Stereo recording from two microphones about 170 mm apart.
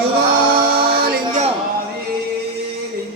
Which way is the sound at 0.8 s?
65° right (ahead or behind).